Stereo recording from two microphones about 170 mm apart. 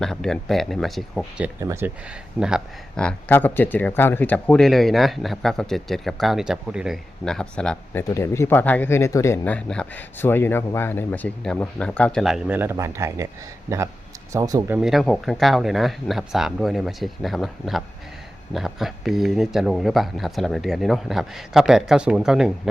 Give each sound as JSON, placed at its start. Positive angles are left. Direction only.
{"t": 0.0, "sound": "speech", "side_deg": 0}
{"t": 1.6, "sound": "speech", "side_deg": -15}
{"t": 2.4, "sound": "speech", "side_deg": 0}
{"t": 8.1, "sound": "speech", "side_deg": 15}
{"t": 14.8, "sound": "speech", "side_deg": 0}